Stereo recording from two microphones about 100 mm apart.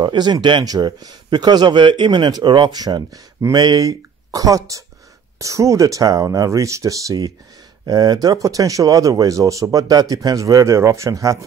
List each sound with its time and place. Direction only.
0.0 s a man's voice: 45° right (ahead or behind)